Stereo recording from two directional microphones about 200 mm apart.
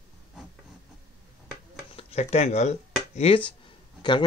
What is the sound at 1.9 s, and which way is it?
Speech, 30° left (ahead or behind).